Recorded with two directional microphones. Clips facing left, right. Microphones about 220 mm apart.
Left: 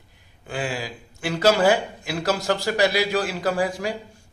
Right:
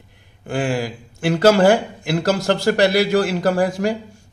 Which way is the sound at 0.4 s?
55° right (ahead or behind).